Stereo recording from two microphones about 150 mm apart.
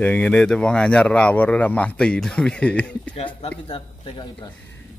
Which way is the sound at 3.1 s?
40° left (ahead or behind).